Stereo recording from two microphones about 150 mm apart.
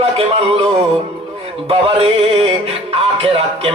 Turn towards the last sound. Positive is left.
turn(degrees=-40)  # may be behind; listen again after turning